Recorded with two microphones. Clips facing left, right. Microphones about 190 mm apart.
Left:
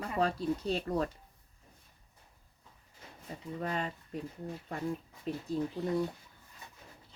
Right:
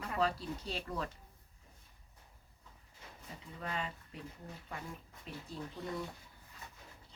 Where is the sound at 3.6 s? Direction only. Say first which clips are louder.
Left 5 dB; 40° left (ahead or behind).